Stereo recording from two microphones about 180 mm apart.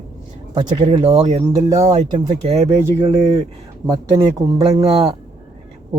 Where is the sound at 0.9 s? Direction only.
35° right (ahead or behind).